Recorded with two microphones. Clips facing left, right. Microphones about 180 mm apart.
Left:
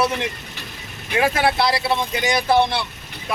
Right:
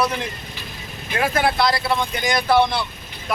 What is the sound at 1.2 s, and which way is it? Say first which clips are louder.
Speech: left 1 dB; 25° left (ahead or behind).